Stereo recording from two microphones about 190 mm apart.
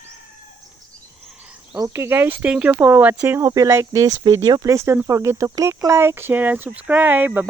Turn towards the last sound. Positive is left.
turn(degrees=-10)  # may be behind; listen again after turning